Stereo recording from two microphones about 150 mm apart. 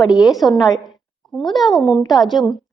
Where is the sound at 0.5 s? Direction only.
25° left (ahead or behind).